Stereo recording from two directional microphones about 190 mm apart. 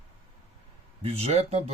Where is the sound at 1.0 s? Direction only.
30° right (ahead or behind).